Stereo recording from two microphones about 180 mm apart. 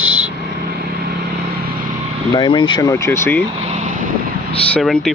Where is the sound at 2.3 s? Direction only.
25° left (ahead or behind).